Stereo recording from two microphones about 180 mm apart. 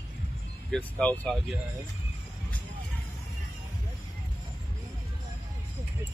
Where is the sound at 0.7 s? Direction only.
5° left (ahead or behind).